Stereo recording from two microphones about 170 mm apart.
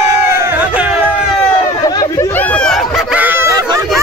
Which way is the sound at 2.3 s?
10° left (ahead or behind).